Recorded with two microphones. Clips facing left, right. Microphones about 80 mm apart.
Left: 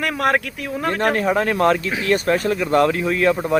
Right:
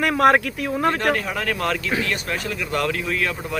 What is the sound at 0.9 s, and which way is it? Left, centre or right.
Speech, left.